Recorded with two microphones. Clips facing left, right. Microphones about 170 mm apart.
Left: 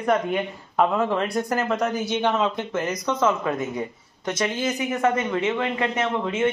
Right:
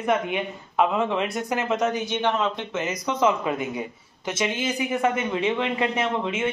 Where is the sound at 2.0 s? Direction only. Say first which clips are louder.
Left 2 dB; 10° left (ahead or behind).